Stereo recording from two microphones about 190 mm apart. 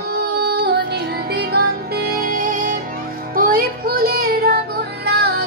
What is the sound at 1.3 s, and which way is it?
Music, 55° right (ahead or behind).